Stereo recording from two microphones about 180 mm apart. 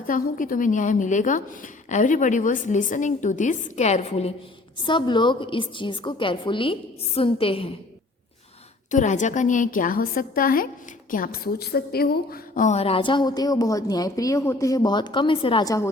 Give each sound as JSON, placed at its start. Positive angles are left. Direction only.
{"t": 0.1, "sound": "a woman's voice", "side_deg": 50}
{"t": 4.8, "sound": "a woman's voice", "side_deg": 25}
{"t": 8.9, "sound": "a woman's voice", "side_deg": 45}